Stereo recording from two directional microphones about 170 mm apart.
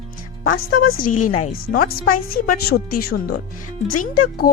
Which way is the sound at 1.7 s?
60° left (ahead or behind).